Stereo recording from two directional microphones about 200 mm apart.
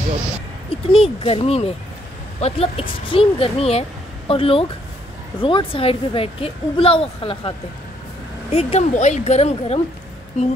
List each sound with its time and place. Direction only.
0.7 s a woman's voice: 30° left (ahead or behind)